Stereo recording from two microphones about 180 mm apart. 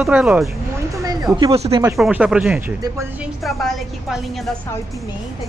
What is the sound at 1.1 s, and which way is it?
Speech, 20° right (ahead or behind).